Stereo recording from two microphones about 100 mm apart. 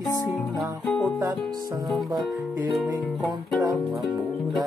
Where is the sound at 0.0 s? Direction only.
35° left (ahead or behind).